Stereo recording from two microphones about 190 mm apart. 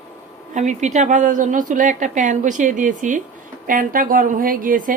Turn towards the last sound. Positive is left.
turn(degrees=-45)  # may be behind; listen again after turning